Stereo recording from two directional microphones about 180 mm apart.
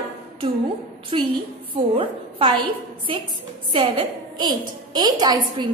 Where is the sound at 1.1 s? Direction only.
30° right (ahead or behind).